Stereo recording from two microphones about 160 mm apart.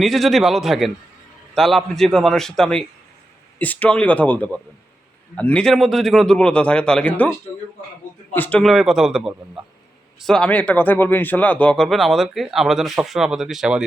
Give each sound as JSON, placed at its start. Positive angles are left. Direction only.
{"t": 0.0, "sound": "speech", "side_deg": 0}
{"t": 8.3, "sound": "speech", "side_deg": 10}